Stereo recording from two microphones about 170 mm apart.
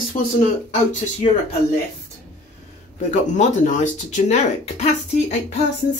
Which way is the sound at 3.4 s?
45° left (ahead or behind).